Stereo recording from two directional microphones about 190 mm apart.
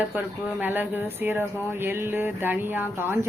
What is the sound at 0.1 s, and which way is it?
Speech, 10° right (ahead or behind).